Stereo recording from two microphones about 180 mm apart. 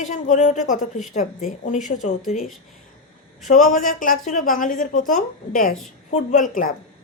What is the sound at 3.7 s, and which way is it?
A woman's voice, 50° left (ahead or behind).